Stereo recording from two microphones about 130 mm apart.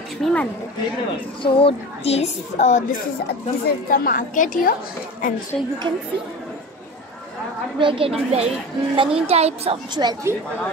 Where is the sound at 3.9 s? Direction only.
90° left.